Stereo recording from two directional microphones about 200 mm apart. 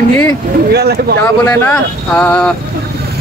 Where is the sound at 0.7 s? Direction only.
55° right (ahead or behind).